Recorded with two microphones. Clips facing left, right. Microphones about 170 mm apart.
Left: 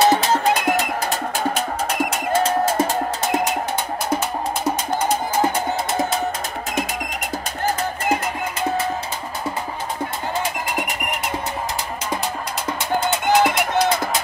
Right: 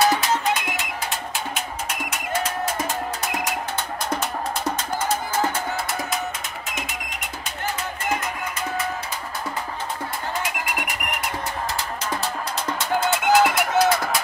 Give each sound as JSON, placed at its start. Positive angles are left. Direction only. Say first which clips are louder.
{"t": 0.0, "sound": "music", "louder": "left 4 dB", "side_deg": 30}
{"t": 4.9, "sound": "music", "louder": "left 3 dB", "side_deg": 15}
{"t": 12.9, "sound": "music", "louder": "left 1 dB", "side_deg": 0}
{"t": 13.8, "sound": "a sound", "louder": "even", "side_deg": 20}